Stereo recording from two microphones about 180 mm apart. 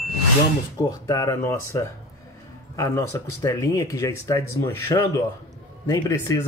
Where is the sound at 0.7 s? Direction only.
20° left (ahead or behind).